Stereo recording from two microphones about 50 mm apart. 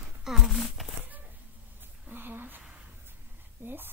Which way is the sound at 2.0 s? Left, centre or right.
Right.